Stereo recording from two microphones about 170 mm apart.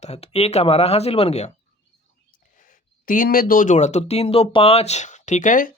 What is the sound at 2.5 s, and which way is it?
Speech, 50° left (ahead or behind).